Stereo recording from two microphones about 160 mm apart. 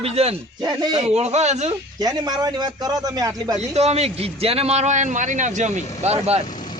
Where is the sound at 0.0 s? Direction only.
40° right (ahead or behind).